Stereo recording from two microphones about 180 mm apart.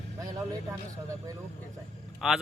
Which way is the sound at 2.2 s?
Centre (ahead or behind).